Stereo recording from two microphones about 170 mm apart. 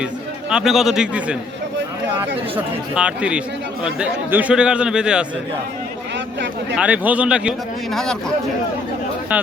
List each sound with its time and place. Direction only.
0.5 s a man's voice: centre (ahead or behind)
2.9 s a man's voice: 5° right (ahead or behind)
6.1 s speech: 90° right
6.7 s a man's voice: 10° right (ahead or behind)
9.3 s a man's voice: 10° right (ahead or behind)